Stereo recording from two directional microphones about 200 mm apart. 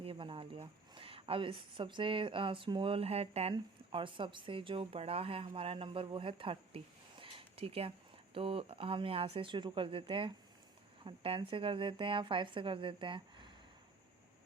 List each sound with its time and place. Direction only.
0.0 s a woman's voice: 25° right (ahead or behind)